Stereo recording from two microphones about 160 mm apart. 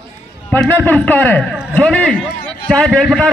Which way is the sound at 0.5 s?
10° left (ahead or behind).